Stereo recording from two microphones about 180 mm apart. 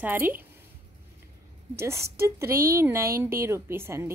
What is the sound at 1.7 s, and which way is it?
A woman's voice, 15° right (ahead or behind).